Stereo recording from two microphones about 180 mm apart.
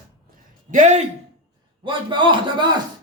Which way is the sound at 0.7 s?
40° right (ahead or behind).